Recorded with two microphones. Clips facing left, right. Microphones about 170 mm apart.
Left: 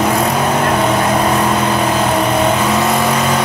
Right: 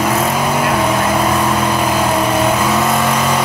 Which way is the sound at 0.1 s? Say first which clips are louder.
Left 1 dB; centre (ahead or behind).